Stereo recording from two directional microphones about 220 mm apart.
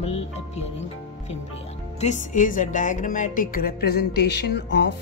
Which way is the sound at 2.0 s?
35° left (ahead or behind).